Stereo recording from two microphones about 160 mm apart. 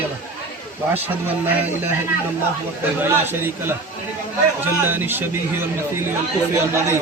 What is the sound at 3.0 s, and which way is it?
Speech, 15° right (ahead or behind).